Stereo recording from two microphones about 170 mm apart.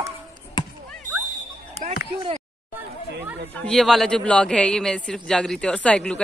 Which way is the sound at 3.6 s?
Centre (ahead or behind).